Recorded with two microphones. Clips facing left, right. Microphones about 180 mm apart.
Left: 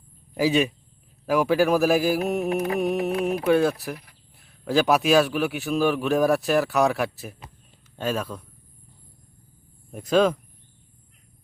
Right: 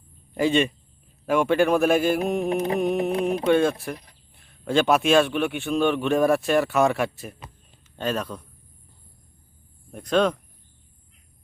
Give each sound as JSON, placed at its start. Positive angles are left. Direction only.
{"t": 0.3, "sound": "a man's voice", "side_deg": 5}
{"t": 2.5, "sound": "carnatic music", "side_deg": -30}
{"t": 3.2, "sound": "a man's voice", "side_deg": 5}
{"t": 9.9, "sound": "a man's voice", "side_deg": 5}